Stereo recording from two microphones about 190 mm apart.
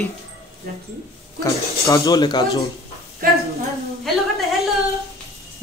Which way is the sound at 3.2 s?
50° right (ahead or behind).